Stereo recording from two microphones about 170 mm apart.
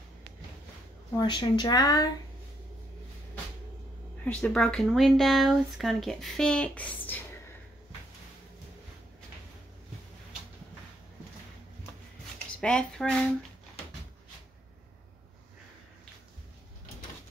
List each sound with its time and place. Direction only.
1.1 s speech: 25° left (ahead or behind)
4.2 s speech: 5° left (ahead or behind)
12.5 s speech: 5° left (ahead or behind)